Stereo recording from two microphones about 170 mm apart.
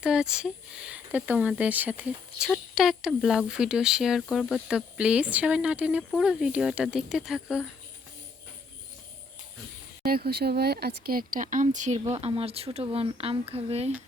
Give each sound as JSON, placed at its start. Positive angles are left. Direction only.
{"t": 0.0, "sound": "speech", "side_deg": -5}
{"t": 10.0, "sound": "speech", "side_deg": -65}